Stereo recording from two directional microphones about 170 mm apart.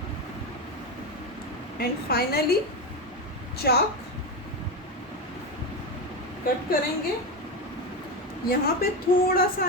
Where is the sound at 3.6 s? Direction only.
70° left (ahead or behind).